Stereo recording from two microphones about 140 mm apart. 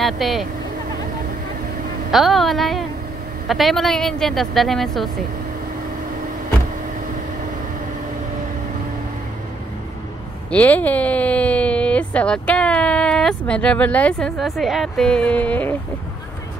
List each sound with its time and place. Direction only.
0.0 s speech: centre (ahead or behind)
2.0 s a woman's voice: centre (ahead or behind)
10.5 s speech: 10° left (ahead or behind)